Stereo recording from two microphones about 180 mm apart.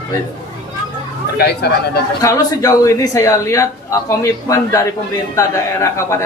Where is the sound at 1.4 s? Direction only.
60° left (ahead or behind).